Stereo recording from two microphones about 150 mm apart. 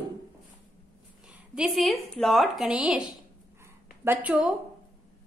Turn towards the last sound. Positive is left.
turn(degrees=-10)  # may be behind; listen again after turning